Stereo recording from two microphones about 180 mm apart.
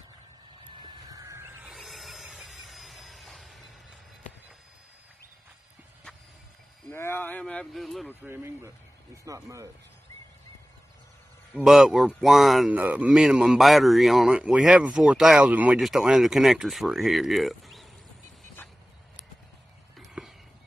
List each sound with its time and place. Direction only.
0.8 s a sound: 20° right (ahead or behind)
1.7 s vehicle: centre (ahead or behind)
6.9 s speech: 10° left (ahead or behind)
8.2 s speech: 15° right (ahead or behind)
11.5 s speech: 5° right (ahead or behind)
20.0 s a sound: centre (ahead or behind)